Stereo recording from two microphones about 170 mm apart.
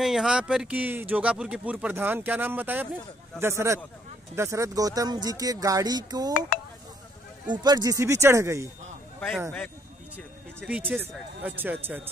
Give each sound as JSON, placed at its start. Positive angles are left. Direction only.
{"t": 0.0, "sound": "speech", "side_deg": 0}
{"t": 7.4, "sound": "speech", "side_deg": -25}
{"t": 10.7, "sound": "speech", "side_deg": -10}